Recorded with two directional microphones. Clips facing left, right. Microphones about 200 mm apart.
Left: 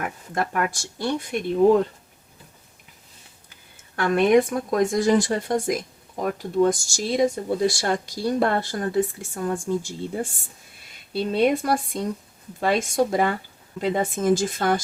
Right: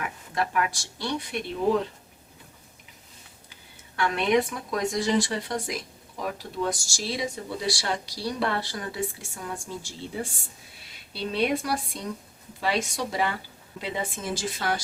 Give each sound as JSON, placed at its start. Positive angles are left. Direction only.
{"t": 0.0, "sound": "speech", "side_deg": 50}
{"t": 3.5, "sound": "speech", "side_deg": 50}